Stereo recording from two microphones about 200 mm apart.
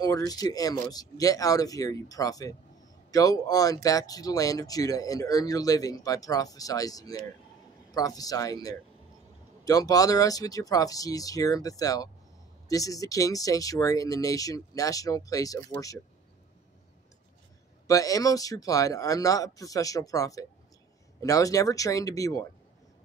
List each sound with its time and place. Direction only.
0.0 s speech: 20° left (ahead or behind)
17.8 s speech: 15° left (ahead or behind)